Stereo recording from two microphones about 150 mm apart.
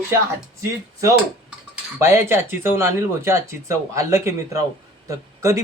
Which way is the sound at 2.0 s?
15° right (ahead or behind).